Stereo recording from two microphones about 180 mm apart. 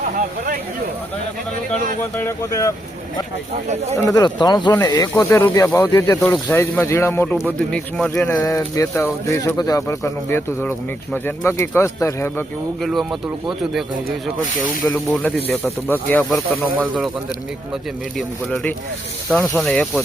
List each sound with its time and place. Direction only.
2.1 s speech: 15° left (ahead or behind)
3.9 s speech: 20° left (ahead or behind)
7.7 s speech: centre (ahead or behind)
12.8 s speech: centre (ahead or behind)
14.6 s speech: 10° left (ahead or behind)
18.2 s speech: centre (ahead or behind)